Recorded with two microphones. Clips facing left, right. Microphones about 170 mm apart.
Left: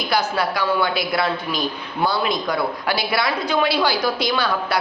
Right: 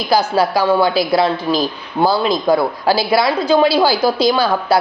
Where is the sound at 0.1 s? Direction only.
35° right (ahead or behind).